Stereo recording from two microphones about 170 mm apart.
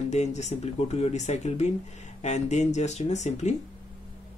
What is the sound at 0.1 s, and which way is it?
Speech, 45° left (ahead or behind).